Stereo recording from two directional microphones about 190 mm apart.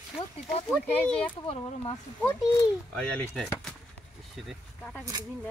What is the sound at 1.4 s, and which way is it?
Speech, 25° left (ahead or behind).